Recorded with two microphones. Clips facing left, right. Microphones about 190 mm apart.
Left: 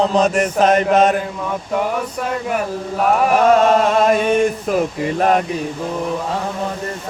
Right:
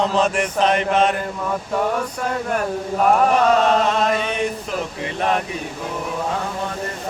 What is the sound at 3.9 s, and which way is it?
Male singing, 50° left (ahead or behind).